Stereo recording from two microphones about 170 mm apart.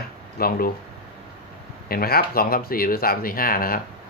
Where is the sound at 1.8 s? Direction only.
60° left (ahead or behind).